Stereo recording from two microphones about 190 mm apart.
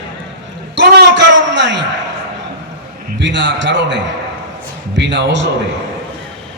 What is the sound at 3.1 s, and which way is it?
A man's voice, 70° right (ahead or behind).